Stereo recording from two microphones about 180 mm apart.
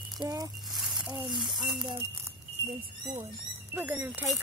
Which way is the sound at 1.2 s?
Centre (ahead or behind).